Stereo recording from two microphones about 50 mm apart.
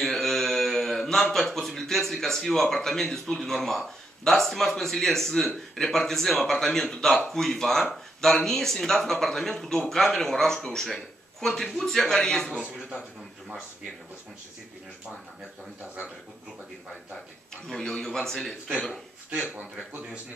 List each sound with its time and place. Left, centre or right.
0.0 s speech: centre
17.7 s speech: centre
19.3 s speech: right